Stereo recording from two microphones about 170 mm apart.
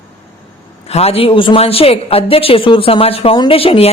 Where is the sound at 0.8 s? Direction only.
35° left (ahead or behind).